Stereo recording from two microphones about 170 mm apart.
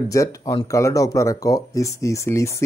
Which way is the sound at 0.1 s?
20° left (ahead or behind).